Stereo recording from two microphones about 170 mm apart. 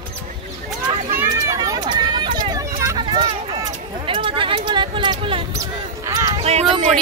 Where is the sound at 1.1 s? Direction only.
20° right (ahead or behind).